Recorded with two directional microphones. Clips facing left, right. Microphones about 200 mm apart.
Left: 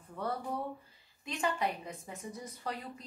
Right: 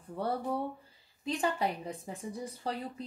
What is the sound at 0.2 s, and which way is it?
A woman's voice, 30° right (ahead or behind).